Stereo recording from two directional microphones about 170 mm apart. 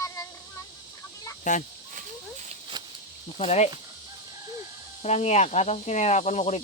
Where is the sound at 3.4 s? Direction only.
40° left (ahead or behind).